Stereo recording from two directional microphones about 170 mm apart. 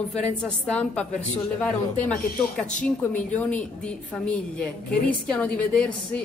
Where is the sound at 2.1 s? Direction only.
65° left (ahead or behind).